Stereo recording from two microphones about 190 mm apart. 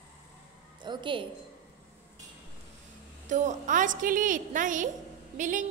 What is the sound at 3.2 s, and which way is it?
A woman's voice, 40° right (ahead or behind).